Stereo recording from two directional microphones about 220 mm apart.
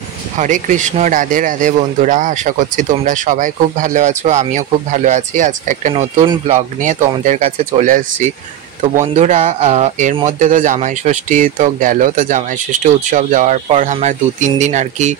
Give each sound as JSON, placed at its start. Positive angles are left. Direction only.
{"t": 0.4, "sound": "speech", "side_deg": -35}